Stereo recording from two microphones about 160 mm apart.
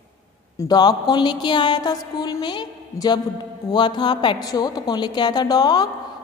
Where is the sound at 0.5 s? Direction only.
20° left (ahead or behind).